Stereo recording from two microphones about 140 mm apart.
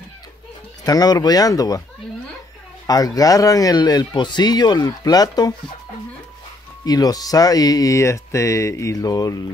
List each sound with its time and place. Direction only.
0.8 s speech: 30° left (ahead or behind)
2.9 s speech: 25° left (ahead or behind)
6.8 s speech: 25° left (ahead or behind)